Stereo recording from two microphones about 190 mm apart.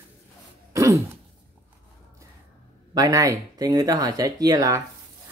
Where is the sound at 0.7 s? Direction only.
15° right (ahead or behind).